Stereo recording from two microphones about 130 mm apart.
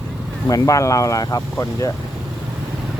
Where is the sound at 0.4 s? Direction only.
25° left (ahead or behind).